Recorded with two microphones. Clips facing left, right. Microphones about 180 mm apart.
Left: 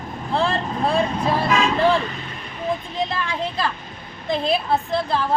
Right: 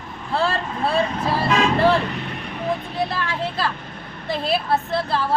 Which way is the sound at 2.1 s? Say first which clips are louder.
Right 4 dB; 65° right (ahead or behind).